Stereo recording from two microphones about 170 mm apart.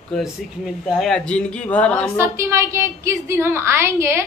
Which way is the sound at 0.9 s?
Centre (ahead or behind).